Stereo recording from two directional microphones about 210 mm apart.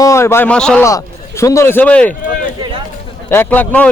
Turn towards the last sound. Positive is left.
turn(degrees=5)  # may be behind; listen again after turning